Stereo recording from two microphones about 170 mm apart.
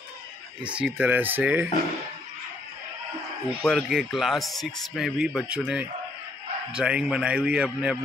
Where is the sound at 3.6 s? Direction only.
Centre (ahead or behind).